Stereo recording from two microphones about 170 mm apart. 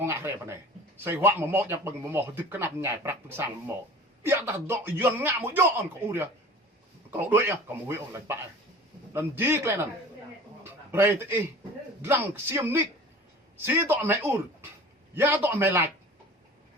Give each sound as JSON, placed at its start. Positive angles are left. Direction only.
{"t": 0.0, "sound": "speech", "side_deg": -15}
{"t": 10.6, "sound": "a sound", "side_deg": -15}
{"t": 12.0, "sound": "speech", "side_deg": -15}